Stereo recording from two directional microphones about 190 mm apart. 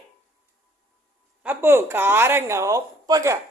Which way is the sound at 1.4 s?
10° right (ahead or behind).